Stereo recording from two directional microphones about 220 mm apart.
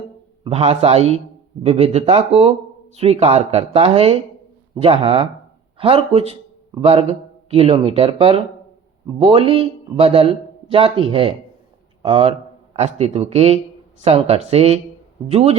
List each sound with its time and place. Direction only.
0.4 s a man's voice: 30° right (ahead or behind)